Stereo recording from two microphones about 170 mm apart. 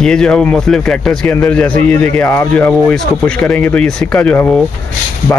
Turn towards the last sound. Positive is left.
turn(degrees=10)  # may be behind; listen again after turning